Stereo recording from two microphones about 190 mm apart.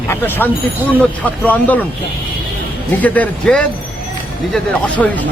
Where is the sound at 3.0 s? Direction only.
5° left (ahead or behind).